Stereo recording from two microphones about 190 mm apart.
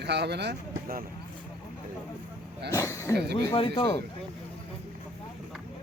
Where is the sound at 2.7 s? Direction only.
15° left (ahead or behind).